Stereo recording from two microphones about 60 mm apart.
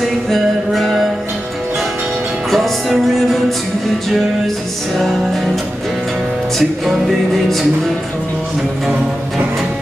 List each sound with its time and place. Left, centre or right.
0.3 s music: centre
2.5 s music: centre
4.9 s music: centre